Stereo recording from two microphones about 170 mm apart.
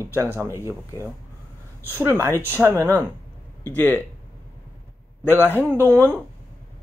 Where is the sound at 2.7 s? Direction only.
10° left (ahead or behind).